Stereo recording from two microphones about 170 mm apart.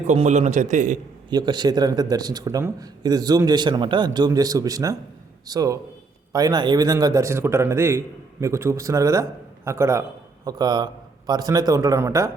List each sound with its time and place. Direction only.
0.1 s a man's voice: 45° right (ahead or behind)
1.3 s a man's voice: 25° right (ahead or behind)